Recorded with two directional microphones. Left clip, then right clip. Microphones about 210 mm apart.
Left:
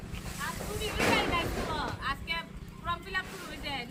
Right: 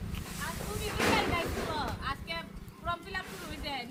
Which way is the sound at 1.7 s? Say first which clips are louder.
Left 1 dB; 15° right (ahead or behind).